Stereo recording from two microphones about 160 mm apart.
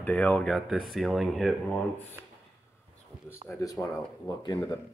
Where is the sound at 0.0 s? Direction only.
10° left (ahead or behind).